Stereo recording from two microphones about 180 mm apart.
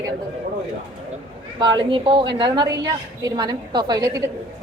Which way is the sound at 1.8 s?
25° right (ahead or behind).